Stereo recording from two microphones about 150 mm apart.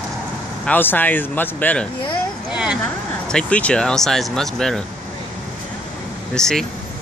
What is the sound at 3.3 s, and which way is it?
Speech, 5° left (ahead or behind).